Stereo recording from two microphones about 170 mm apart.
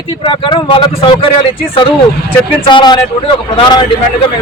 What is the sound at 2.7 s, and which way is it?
Speech, 25° left (ahead or behind).